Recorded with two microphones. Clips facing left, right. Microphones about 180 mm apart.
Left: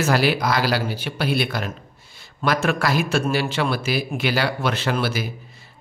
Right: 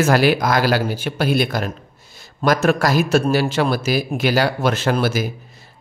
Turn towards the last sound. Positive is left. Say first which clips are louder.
# right 4 dB
turn(degrees=-45)  # may be behind; listen again after turning